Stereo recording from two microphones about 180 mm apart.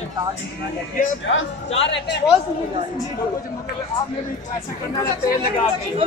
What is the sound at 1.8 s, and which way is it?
Speech, 80° left.